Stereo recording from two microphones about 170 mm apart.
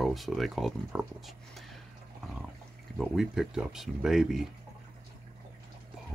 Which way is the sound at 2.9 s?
Centre (ahead or behind).